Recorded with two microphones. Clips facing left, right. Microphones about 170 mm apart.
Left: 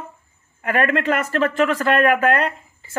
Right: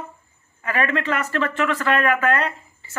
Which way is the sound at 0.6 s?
50° left (ahead or behind).